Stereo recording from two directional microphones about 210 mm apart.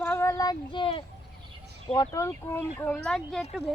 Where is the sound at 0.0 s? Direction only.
10° left (ahead or behind).